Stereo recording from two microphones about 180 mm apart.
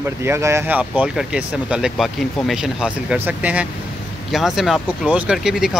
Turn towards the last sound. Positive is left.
turn(degrees=0)  # may be behind; listen again after turning